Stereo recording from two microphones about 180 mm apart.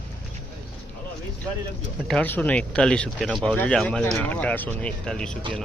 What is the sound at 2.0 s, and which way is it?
Speech, 10° left (ahead or behind).